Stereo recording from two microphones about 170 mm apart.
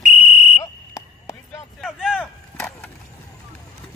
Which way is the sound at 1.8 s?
5° right (ahead or behind).